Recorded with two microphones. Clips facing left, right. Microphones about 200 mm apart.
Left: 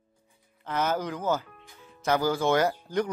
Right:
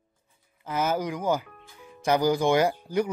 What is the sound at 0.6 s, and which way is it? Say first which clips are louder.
Speech: right 1 dB; 10° right (ahead or behind).